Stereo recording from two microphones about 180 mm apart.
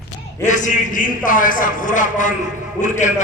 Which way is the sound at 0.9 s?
50° left (ahead or behind).